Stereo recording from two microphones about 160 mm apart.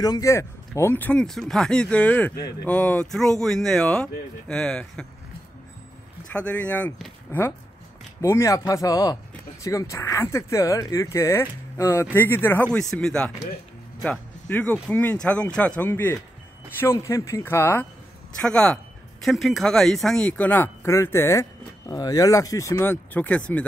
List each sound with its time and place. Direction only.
0.0 s speech: 20° left (ahead or behind); by 5.0 s 5° left (ahead or behind)
6.3 s speech: 10° left (ahead or behind)